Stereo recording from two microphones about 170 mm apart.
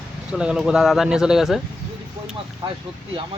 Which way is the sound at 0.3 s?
5° right (ahead or behind).